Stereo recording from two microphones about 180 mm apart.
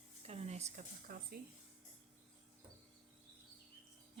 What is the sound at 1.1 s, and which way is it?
Speech, 55° right (ahead or behind).